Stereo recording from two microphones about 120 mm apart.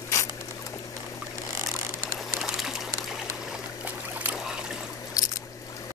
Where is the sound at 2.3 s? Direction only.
5° right (ahead or behind).